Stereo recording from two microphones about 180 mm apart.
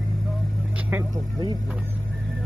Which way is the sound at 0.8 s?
15° right (ahead or behind).